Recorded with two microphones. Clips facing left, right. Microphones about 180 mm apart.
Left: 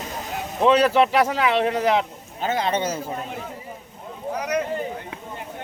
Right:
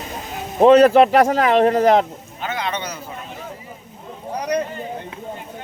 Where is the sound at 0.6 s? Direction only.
45° right (ahead or behind).